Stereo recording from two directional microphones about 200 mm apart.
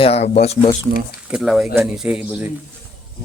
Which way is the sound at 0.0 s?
30° left (ahead or behind).